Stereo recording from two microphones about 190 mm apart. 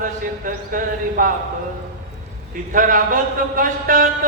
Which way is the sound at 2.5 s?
45° right (ahead or behind).